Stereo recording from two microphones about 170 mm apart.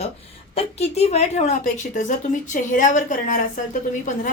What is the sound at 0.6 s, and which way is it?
A woman's voice, 40° left (ahead or behind).